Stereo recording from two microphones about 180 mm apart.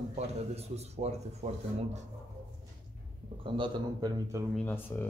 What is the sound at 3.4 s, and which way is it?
A man's voice, 25° right (ahead or behind).